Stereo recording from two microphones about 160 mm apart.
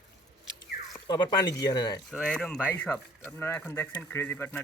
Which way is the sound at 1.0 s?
25° left (ahead or behind).